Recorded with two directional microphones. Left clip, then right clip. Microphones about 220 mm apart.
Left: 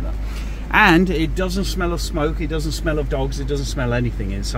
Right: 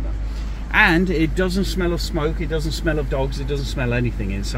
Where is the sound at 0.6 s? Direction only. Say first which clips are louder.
Left 2 dB; 40° left (ahead or behind).